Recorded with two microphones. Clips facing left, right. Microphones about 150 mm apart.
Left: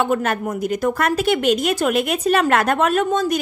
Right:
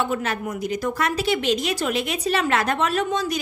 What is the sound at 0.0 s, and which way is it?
A woman's voice, 55° left (ahead or behind).